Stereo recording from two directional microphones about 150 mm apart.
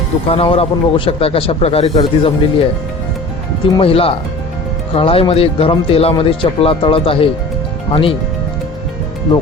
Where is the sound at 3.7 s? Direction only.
40° left (ahead or behind).